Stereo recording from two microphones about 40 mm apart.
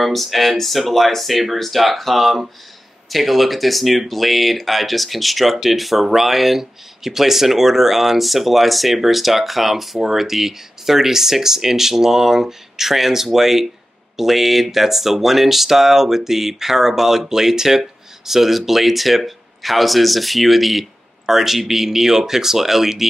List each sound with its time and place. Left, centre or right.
0.0 s speech: centre